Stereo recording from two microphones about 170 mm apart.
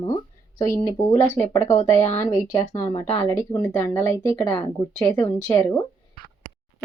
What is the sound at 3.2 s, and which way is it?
Speech, 20° left (ahead or behind).